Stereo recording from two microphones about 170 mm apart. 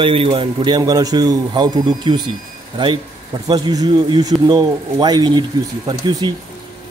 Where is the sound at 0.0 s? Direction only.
30° right (ahead or behind).